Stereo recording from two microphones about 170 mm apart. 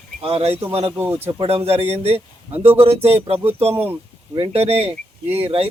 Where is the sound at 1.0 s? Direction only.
20° right (ahead or behind).